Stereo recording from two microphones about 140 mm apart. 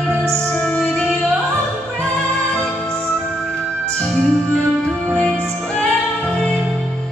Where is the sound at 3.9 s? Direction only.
5° left (ahead or behind).